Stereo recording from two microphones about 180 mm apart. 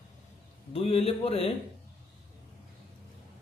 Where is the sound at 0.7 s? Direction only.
35° left (ahead or behind).